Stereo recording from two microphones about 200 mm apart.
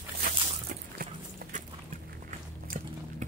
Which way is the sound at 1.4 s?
50° right (ahead or behind).